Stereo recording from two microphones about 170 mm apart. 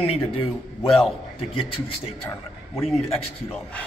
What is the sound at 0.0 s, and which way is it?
Speech, 35° left (ahead or behind).